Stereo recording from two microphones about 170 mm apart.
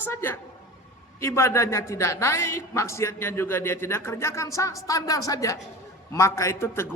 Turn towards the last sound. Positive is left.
turn(degrees=15)  # may be behind; listen again after turning